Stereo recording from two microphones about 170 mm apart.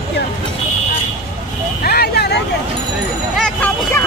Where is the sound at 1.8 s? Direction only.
65° left (ahead or behind).